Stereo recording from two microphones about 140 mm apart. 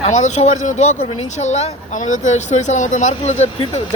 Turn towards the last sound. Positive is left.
turn(degrees=50)  # may be behind; listen again after turning